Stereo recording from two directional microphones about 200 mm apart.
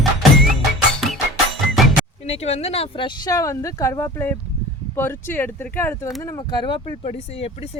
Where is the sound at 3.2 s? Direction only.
15° left (ahead or behind).